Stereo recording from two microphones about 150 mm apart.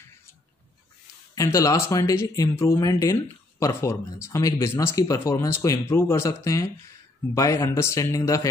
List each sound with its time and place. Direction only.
1.3 s speech: 20° left (ahead or behind)